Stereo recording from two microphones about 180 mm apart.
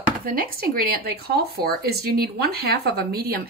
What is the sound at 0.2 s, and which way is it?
Speech, 55° right (ahead or behind).